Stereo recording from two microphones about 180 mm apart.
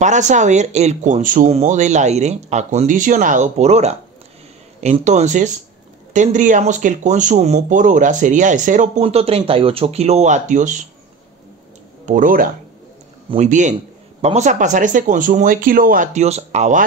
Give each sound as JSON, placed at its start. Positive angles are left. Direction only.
{"t": 0.0, "sound": "speech", "side_deg": -40}
{"t": 12.1, "sound": "speech", "side_deg": -45}